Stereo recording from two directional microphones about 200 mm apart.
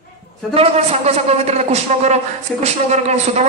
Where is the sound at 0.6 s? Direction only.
30° right (ahead or behind).